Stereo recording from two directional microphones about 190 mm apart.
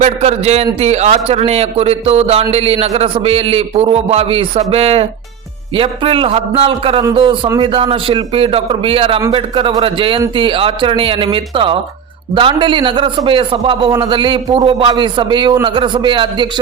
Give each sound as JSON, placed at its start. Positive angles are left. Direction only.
{"t": 0.0, "sound": "a man's voice", "side_deg": -35}